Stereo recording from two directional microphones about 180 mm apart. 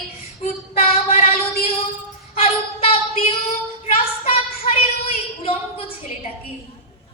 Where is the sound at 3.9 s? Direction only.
35° left (ahead or behind).